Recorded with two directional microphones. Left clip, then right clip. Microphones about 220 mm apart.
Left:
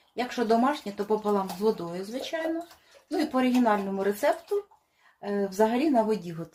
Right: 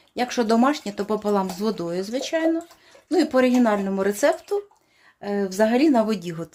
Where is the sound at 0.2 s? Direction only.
55° right (ahead or behind).